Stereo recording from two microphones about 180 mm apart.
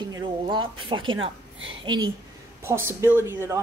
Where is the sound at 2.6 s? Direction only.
15° right (ahead or behind).